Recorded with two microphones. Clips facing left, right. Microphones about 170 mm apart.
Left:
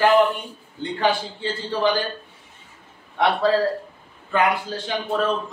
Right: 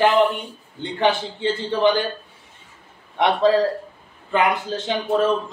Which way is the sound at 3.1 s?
20° right (ahead or behind).